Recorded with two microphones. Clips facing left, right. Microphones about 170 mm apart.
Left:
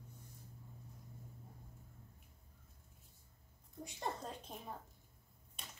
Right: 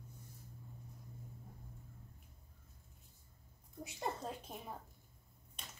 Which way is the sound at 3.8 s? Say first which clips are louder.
Right 1 dB; 5° right (ahead or behind).